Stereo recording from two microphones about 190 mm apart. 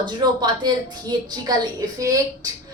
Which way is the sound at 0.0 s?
20° right (ahead or behind).